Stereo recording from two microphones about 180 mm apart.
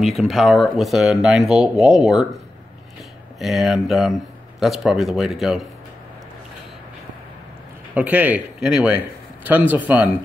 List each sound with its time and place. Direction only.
0.0 s speech: centre (ahead or behind)
7.9 s speech: 10° right (ahead or behind)